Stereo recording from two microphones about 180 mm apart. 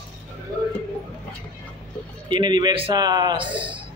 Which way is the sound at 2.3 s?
25° right (ahead or behind).